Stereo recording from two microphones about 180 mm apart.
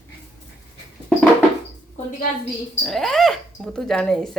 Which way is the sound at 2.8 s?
Centre (ahead or behind).